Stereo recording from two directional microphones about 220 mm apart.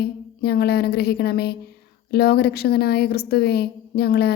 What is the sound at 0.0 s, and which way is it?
A woman's voice, 45° left (ahead or behind).